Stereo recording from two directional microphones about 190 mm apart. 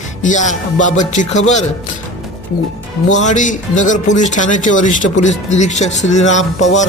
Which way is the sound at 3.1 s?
40° left (ahead or behind).